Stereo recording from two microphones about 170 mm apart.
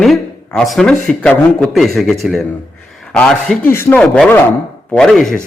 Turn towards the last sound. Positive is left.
turn(degrees=5)  # may be behind; listen again after turning